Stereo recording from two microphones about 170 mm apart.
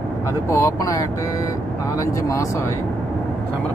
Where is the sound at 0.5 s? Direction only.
20° left (ahead or behind).